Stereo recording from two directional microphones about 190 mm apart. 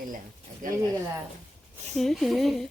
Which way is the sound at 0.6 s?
45° right (ahead or behind).